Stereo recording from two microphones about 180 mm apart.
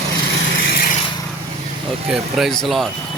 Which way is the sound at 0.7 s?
55° left (ahead or behind).